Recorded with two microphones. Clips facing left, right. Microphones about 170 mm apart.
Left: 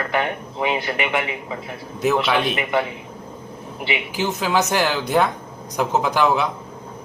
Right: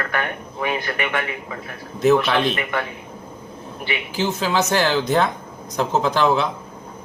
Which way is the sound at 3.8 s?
15° left (ahead or behind).